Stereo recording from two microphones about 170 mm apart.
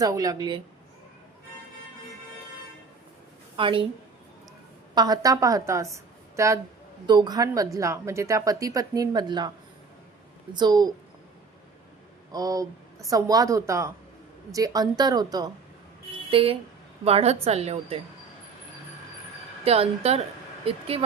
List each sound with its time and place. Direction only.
0.0 s a woman's voice: 20° right (ahead or behind)
3.6 s a woman's voice: 30° right (ahead or behind)
4.9 s a woman's voice: 25° right (ahead or behind)
10.5 s a woman's voice: 25° right (ahead or behind)
12.3 s a woman's voice: 20° right (ahead or behind); by 18.0 s 35° right (ahead or behind)
19.6 s a woman's voice: 35° right (ahead or behind)